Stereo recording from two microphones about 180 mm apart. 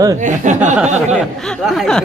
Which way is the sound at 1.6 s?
Centre (ahead or behind).